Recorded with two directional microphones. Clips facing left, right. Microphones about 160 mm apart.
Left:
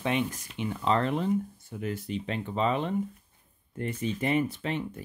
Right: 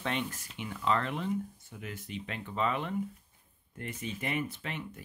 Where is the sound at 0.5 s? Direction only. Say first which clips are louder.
Left 4 dB; 30° left (ahead or behind).